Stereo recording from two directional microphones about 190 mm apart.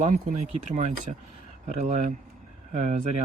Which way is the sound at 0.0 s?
40° right (ahead or behind).